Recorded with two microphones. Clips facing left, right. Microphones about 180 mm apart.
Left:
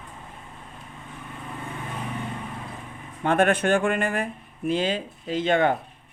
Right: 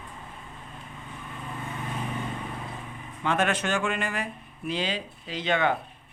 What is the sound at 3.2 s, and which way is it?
Speech, 55° left (ahead or behind).